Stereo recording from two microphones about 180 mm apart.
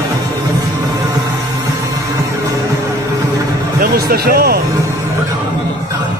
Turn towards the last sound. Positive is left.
turn(degrees=-60)  # may be behind; listen again after turning